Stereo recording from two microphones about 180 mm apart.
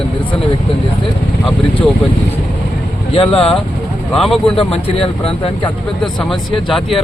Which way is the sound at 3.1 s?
30° left (ahead or behind).